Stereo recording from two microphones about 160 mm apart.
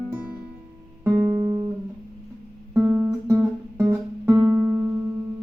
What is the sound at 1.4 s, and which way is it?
Music, 20° right (ahead or behind).